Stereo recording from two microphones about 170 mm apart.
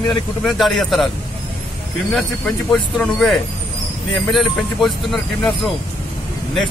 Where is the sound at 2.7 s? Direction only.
5° left (ahead or behind).